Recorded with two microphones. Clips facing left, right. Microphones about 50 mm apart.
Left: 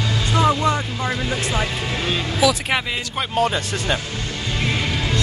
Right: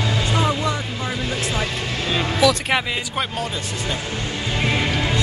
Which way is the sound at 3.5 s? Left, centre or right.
Left.